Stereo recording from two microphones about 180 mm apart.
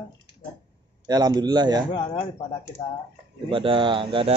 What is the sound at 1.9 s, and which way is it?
Speech, 25° left (ahead or behind).